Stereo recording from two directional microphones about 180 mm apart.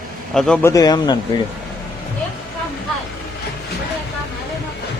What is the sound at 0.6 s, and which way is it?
Speech, 20° left (ahead or behind).